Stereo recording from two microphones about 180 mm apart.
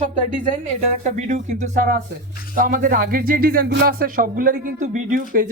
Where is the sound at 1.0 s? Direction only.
45° right (ahead or behind).